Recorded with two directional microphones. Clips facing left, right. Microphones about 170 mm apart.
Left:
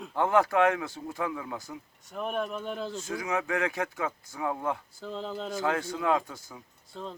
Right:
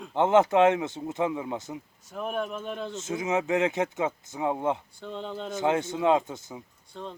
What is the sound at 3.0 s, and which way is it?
Speech, 20° right (ahead or behind).